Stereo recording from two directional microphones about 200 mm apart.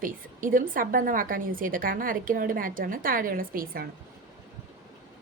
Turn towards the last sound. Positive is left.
turn(degrees=-45)  # may be behind; listen again after turning